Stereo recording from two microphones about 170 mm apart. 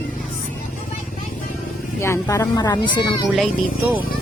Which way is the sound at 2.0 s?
15° left (ahead or behind).